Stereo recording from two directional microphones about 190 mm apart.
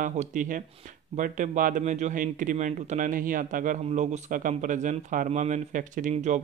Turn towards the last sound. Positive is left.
turn(degrees=-40)  # may be behind; listen again after turning